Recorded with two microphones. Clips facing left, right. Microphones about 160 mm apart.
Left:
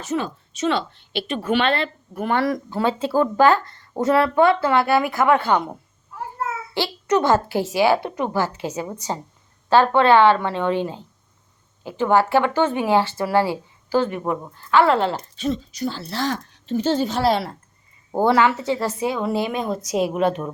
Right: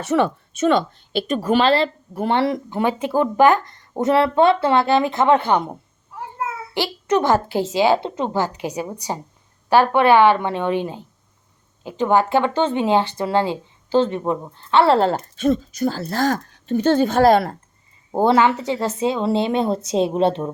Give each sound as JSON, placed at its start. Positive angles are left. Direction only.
{"t": 0.0, "sound": "a woman's voice", "side_deg": -65}
{"t": 6.7, "sound": "a woman's voice", "side_deg": -15}
{"t": 18.1, "sound": "a woman's voice", "side_deg": -20}